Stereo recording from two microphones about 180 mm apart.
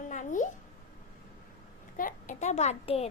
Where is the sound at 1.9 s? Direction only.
45° left (ahead or behind).